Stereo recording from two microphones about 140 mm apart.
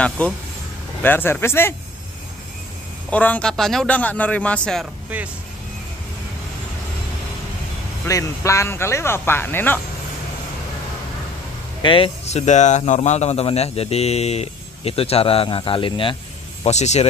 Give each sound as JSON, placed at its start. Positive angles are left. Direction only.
{"t": 1.0, "sound": "speech", "side_deg": 15}
{"t": 3.1, "sound": "speech", "side_deg": 10}
{"t": 5.1, "sound": "speech", "side_deg": -10}
{"t": 8.0, "sound": "speech", "side_deg": 20}
{"t": 11.8, "sound": "speech", "side_deg": 40}
{"t": 12.3, "sound": "speech", "side_deg": 55}
{"t": 16.6, "sound": "speech", "side_deg": 55}